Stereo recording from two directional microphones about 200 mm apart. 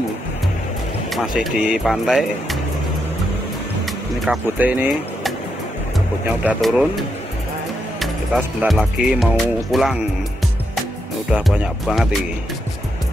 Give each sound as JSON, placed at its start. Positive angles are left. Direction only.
{"t": 1.1, "sound": "speech", "side_deg": 0}
{"t": 4.3, "sound": "speech", "side_deg": -10}
{"t": 6.4, "sound": "speech", "side_deg": -5}
{"t": 8.4, "sound": "speech", "side_deg": -5}
{"t": 11.3, "sound": "speech", "side_deg": -5}